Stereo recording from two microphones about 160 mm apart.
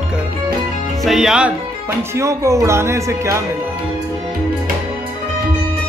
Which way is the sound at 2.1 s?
20° right (ahead or behind).